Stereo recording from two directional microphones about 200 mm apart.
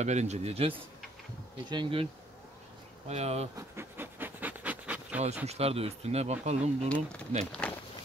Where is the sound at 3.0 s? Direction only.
30° right (ahead or behind).